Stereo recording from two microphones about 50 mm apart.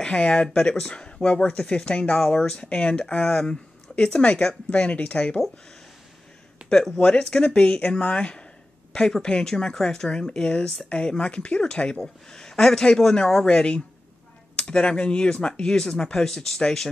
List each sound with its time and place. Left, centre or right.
0.0 s speech: centre
3.2 s speech: centre
6.7 s speech: centre